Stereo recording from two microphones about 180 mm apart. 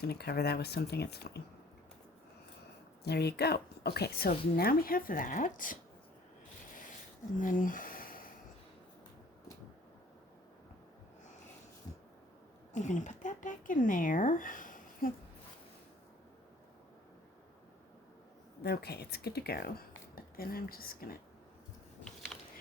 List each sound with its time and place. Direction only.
0.0 s a woman's voice: 65° left (ahead or behind)
3.0 s a woman's voice: 65° left (ahead or behind); by 5.7 s 50° left (ahead or behind)
7.3 s a sound: 45° left (ahead or behind)
12.7 s speech: 45° left (ahead or behind)
18.6 s a woman's voice: 60° left (ahead or behind)